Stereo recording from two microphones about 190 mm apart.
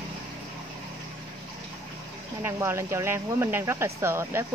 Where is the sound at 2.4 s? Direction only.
15° right (ahead or behind).